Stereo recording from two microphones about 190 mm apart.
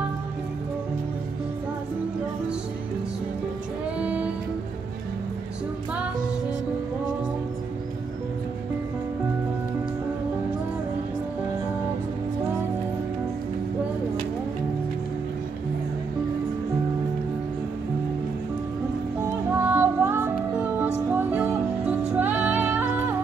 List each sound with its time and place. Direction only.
4.0 s music: 5° right (ahead or behind)
19.6 s music: 10° right (ahead or behind)